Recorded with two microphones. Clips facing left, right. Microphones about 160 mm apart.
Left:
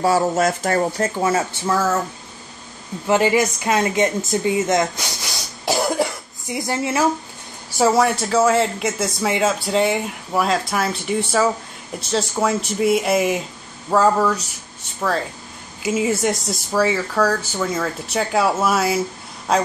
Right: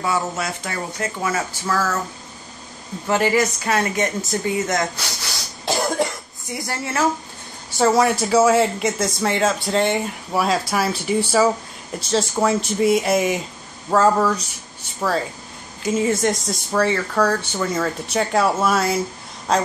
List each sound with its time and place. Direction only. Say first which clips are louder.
0.0 s speech: left 6 dB; 40° left (ahead or behind)
1.2 s a woman's voice: left 3 dB; 25° left (ahead or behind)
3.1 s a woman's voice: left 2 dB; 20° left (ahead or behind)
6.5 s a woman's voice: left 4 dB; 20° left (ahead or behind)
7.7 s speech: even; centre (ahead or behind)
15.8 s speech: even; 5° left (ahead or behind)